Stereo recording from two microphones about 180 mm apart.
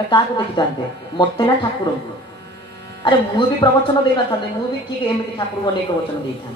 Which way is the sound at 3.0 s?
25° left (ahead or behind).